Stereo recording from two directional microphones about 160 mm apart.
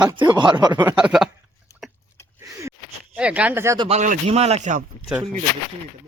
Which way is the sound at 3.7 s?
40° right (ahead or behind).